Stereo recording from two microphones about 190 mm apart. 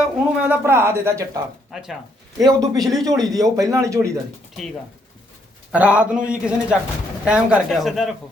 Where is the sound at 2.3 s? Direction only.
20° right (ahead or behind).